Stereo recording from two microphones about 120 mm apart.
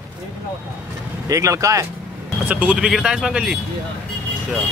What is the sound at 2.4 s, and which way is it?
Speech, 10° right (ahead or behind).